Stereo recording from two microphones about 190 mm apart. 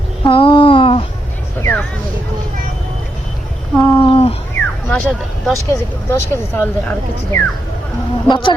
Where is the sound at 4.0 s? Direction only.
30° left (ahead or behind).